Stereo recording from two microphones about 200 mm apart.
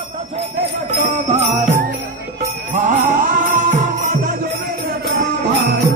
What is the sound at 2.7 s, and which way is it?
Music, 40° right (ahead or behind).